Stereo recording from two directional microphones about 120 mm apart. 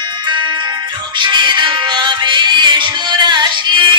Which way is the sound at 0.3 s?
40° right (ahead or behind).